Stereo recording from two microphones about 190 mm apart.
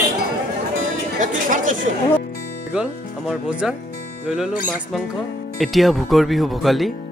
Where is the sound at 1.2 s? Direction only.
45° right (ahead or behind).